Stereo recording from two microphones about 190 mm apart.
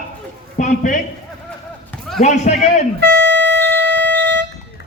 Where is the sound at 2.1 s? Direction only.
35° left (ahead or behind).